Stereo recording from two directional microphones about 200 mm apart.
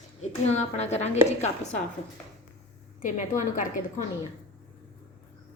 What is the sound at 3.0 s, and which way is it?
Speech, 40° left (ahead or behind).